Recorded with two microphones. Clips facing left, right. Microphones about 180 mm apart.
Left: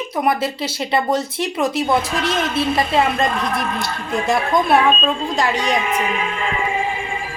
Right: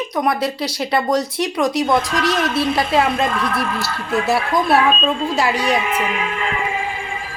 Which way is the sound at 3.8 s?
5° right (ahead or behind).